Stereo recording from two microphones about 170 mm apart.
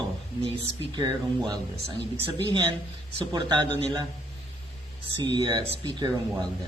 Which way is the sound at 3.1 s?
25° right (ahead or behind).